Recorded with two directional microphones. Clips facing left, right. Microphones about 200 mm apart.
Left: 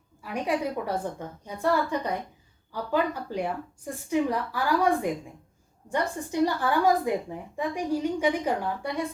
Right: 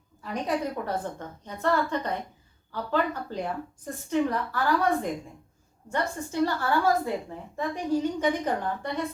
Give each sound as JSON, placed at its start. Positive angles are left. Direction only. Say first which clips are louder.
{"t": 0.2, "sound": "a woman's voice", "louder": "left 1 dB", "side_deg": 10}